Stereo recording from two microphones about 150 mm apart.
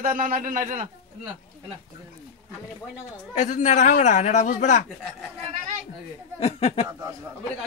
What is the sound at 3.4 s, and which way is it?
A man's voice, 55° left (ahead or behind).